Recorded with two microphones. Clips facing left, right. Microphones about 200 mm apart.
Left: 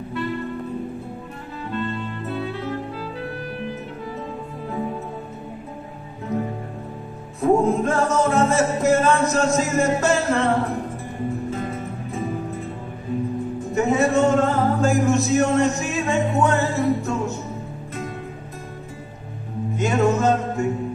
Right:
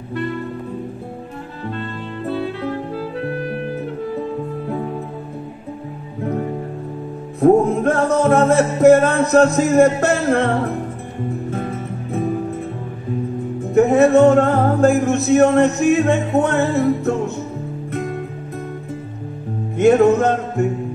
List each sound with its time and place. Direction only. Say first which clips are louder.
7.3 s music: right 5 dB; 60° right (ahead or behind)
11.5 s music: right 3 dB; 60° right (ahead or behind)
13.7 s music: right 7 dB; 60° right (ahead or behind)
19.8 s music: right 8 dB; 60° right (ahead or behind)